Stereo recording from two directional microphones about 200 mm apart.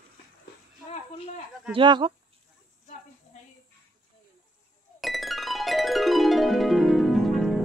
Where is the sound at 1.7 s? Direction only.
25° right (ahead or behind).